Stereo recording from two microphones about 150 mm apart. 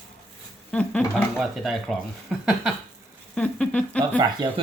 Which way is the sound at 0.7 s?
5° left (ahead or behind).